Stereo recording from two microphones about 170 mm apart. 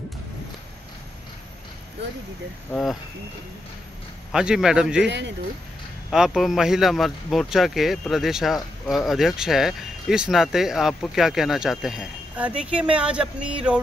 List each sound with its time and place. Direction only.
2.7 s speech: centre (ahead or behind)
4.3 s speech: 5° right (ahead or behind)
5.0 s speech: 90° right
6.0 s speech: centre (ahead or behind)